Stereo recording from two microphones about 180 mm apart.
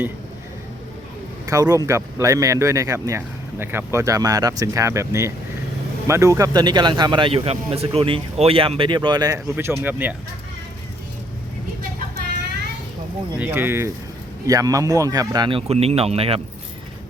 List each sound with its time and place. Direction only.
1.5 s speech: 20° right (ahead or behind)
13.4 s speech: 10° right (ahead or behind); by 16.4 s 35° right (ahead or behind)